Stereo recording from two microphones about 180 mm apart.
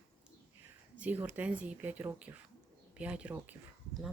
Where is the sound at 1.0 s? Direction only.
10° right (ahead or behind).